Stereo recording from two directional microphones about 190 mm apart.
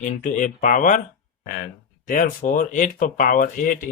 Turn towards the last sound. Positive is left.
turn(degrees=45)  # may be behind; listen again after turning